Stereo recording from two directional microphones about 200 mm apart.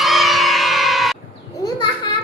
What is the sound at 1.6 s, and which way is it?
Children playing, 20° left (ahead or behind).